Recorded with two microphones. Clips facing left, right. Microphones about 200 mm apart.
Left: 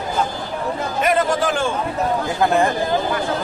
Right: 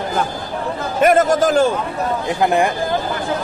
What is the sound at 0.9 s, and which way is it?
Speech, 45° right (ahead or behind).